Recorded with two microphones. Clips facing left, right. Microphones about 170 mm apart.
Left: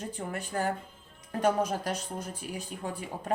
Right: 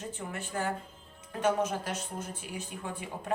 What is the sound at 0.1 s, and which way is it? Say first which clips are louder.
Speech: left 3 dB; 40° left (ahead or behind).